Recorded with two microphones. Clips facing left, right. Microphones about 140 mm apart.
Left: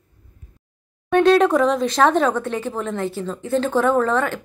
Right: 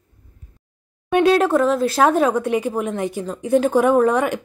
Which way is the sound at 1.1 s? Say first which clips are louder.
Left 1 dB; 10° right (ahead or behind).